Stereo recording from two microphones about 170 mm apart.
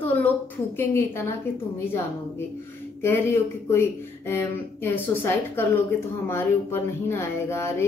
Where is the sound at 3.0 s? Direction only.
15° left (ahead or behind).